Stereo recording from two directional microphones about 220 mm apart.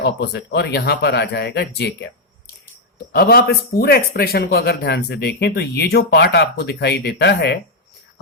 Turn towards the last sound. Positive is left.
turn(degrees=50)  # may be behind; listen again after turning